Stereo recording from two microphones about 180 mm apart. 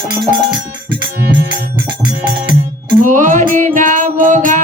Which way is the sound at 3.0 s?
45° right (ahead or behind).